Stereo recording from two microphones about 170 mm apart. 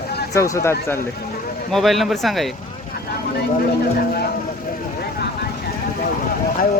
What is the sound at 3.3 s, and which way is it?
Speech, 65° left (ahead or behind).